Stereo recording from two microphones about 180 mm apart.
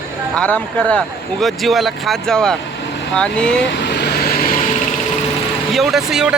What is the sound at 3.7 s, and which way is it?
Vehicle, 70° left (ahead or behind).